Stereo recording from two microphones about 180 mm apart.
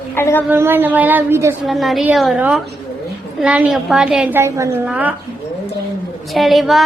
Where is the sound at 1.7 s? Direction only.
Centre (ahead or behind).